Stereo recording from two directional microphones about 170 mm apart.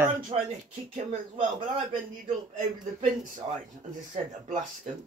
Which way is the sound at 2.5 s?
50° right (ahead or behind).